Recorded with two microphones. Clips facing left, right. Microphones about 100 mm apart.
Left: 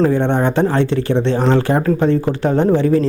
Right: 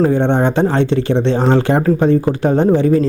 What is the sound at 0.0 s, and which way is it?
Speech, 50° right (ahead or behind).